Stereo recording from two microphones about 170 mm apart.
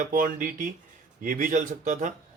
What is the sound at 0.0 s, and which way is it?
Speech, 55° right (ahead or behind).